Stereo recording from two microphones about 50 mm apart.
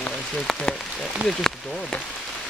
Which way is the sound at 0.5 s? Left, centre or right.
Centre.